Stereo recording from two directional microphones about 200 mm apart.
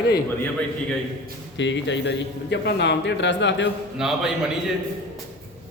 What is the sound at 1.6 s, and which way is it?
Speech, 65° left (ahead or behind).